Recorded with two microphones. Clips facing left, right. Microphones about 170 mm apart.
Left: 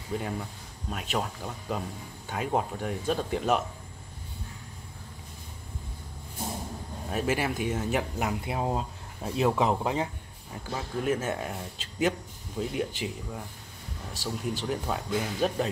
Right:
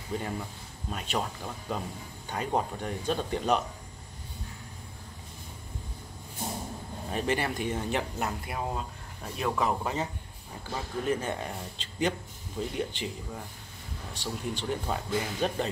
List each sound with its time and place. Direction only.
0.2 s speech: centre (ahead or behind)
7.1 s speech: 5° left (ahead or behind)
8.5 s speech: 25° left (ahead or behind)
10.7 s speech: 5° left (ahead or behind)